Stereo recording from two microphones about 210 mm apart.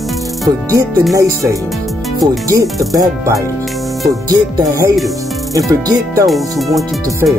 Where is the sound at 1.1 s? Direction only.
15° right (ahead or behind).